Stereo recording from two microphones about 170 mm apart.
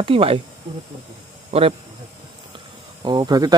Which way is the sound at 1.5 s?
35° right (ahead or behind).